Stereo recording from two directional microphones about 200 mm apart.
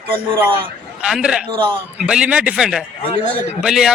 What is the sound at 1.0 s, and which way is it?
A man's voice, 5° right (ahead or behind).